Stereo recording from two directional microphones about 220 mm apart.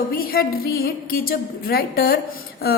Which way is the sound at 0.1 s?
40° left (ahead or behind).